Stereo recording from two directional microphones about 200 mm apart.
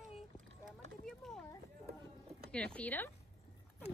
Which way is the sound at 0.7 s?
Centre (ahead or behind).